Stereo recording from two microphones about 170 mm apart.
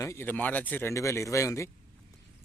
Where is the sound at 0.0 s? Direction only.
15° left (ahead or behind).